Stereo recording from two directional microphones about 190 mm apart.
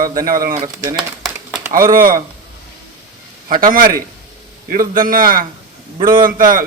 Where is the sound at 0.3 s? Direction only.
45° right (ahead or behind).